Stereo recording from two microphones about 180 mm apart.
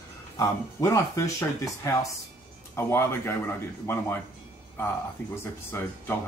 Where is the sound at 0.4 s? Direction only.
20° left (ahead or behind).